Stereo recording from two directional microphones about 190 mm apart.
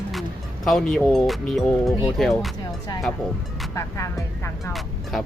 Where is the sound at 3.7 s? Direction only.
15° left (ahead or behind).